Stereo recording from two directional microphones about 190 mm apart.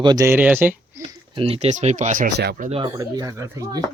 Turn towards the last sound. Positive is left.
turn(degrees=-15)  # may be behind; listen again after turning